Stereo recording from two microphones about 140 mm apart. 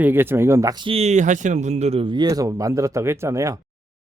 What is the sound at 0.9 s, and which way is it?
Speech, 50° right (ahead or behind).